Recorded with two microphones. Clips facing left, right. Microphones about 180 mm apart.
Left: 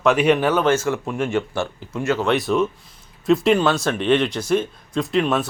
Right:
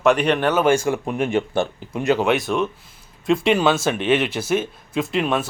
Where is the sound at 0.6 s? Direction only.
15° right (ahead or behind).